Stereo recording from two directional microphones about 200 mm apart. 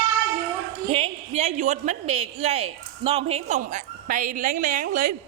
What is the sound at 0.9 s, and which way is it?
A woman's voice, 30° right (ahead or behind).